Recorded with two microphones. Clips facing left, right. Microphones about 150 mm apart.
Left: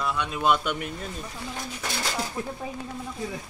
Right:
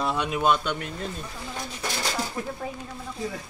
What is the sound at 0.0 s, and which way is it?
Speech, 30° right (ahead or behind).